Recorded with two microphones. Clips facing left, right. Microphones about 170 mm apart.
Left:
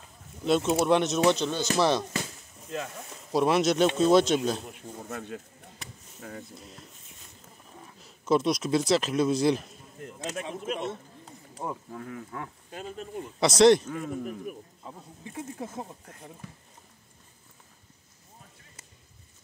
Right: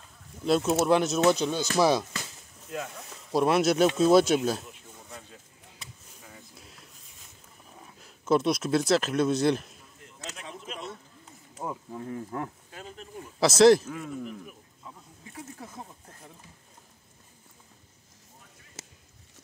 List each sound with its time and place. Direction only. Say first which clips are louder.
0.5 s speech: even; centre (ahead or behind)
4.9 s chop: left 10 dB; 70° left (ahead or behind)
6.5 s a sound: left 6 dB; centre (ahead or behind)
7.8 s speech: even; centre (ahead or behind)
10.5 s speech: left 7 dB; 50° left (ahead or behind)
11.6 s speech: even; 5° right (ahead or behind)
12.1 s speech: right 6 dB; 35° right (ahead or behind)
12.7 s speech: left 5 dB; 20° left (ahead or behind)
13.4 s speech: right 1 dB; centre (ahead or behind)
14.9 s speech: left 3 dB; 25° left (ahead or behind)
16.4 s speech: left 9 dB; 65° left (ahead or behind)
18.8 s a sound: right 10 dB; 90° right